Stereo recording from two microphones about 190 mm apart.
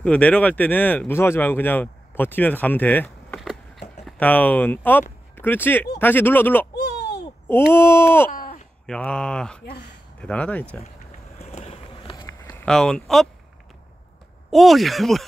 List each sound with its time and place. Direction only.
0.0 s speech: 5° left (ahead or behind)
3.3 s a sound: centre (ahead or behind)
4.0 s speech: 10° left (ahead or behind)
6.7 s a sound: 60° left (ahead or behind)
7.2 s speech: 10° left (ahead or behind)
8.3 s a sound: 45° left (ahead or behind)
8.8 s speech: 5° left (ahead or behind)
11.3 s vehicle: 35° left (ahead or behind)
11.9 s run: 25° left (ahead or behind)
12.4 s speech: 5° left (ahead or behind)
14.5 s speech: centre (ahead or behind)